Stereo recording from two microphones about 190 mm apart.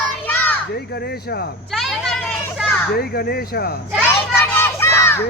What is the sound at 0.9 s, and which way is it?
Speech, 55° left (ahead or behind).